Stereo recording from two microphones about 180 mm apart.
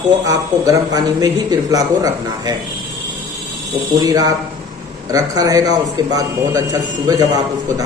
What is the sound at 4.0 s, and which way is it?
A man's voice, 20° right (ahead or behind).